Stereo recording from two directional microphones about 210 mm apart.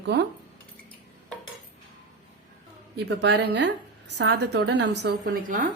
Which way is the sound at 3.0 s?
55° right (ahead or behind).